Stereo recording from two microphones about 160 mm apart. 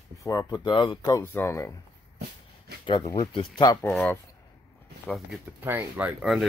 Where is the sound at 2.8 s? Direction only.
30° left (ahead or behind).